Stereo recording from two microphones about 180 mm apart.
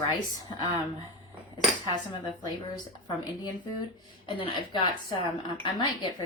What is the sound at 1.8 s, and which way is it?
Speech, 20° left (ahead or behind).